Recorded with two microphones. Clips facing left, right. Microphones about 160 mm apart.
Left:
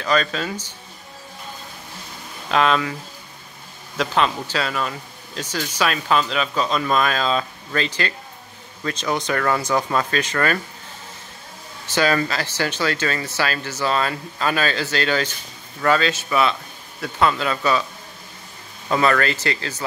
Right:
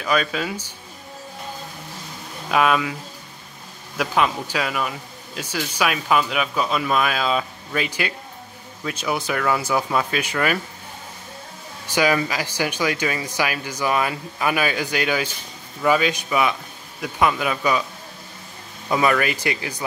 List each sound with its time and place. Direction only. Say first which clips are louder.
0.0 s speech: left 1 dB; 10° right (ahead or behind)
2.5 s speech: even; 10° right (ahead or behind)
11.9 s speech: even; 10° right (ahead or behind)
18.9 s speech: left 1 dB; 15° right (ahead or behind)